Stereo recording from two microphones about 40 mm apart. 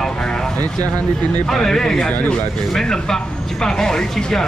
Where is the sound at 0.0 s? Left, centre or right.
Centre.